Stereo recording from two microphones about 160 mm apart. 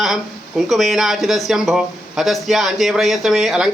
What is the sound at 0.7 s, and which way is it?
Speech, centre (ahead or behind).